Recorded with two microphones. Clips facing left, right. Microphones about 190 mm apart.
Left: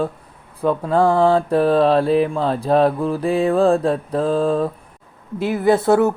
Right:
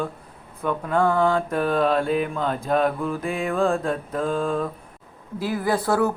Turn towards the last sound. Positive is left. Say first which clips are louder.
# left 7 dB
turn(degrees=25)  # may be behind; listen again after turning